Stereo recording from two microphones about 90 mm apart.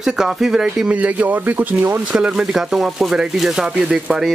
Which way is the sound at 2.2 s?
5° right (ahead or behind).